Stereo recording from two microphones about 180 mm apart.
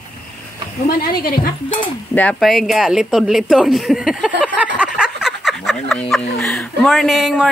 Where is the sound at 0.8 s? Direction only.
60° left (ahead or behind).